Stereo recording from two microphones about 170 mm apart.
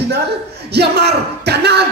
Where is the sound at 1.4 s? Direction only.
75° right (ahead or behind).